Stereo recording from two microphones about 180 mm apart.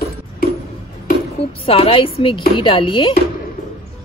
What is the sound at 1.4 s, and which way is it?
A woman's voice, 35° left (ahead or behind).